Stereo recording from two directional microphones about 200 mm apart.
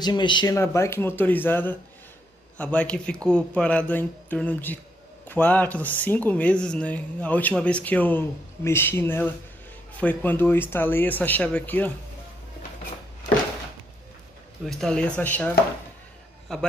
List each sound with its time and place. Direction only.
0.0 s speech: 20° left (ahead or behind)
14.7 s speech: 5° left (ahead or behind)